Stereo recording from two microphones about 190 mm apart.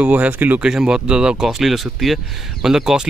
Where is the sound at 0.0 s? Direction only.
10° right (ahead or behind).